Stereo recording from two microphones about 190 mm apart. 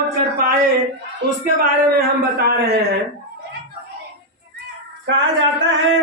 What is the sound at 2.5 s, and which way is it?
Speech, 55° right (ahead or behind).